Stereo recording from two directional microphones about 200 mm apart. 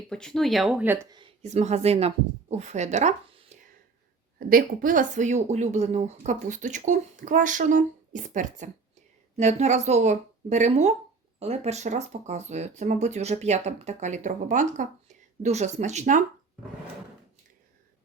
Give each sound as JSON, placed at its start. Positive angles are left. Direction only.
{"t": 0.1, "sound": "speech", "side_deg": 5}
{"t": 1.4, "sound": "speech", "side_deg": -35}
{"t": 4.4, "sound": "speech", "side_deg": -45}